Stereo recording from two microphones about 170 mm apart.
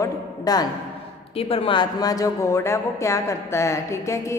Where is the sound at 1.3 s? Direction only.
35° left (ahead or behind).